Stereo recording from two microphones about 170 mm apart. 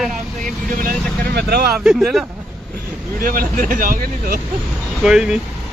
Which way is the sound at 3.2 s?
55° right (ahead or behind).